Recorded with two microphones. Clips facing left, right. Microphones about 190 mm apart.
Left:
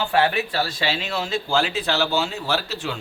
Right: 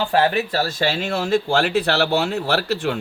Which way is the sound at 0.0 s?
35° right (ahead or behind).